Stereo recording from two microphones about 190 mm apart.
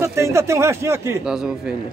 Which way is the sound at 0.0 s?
15° right (ahead or behind).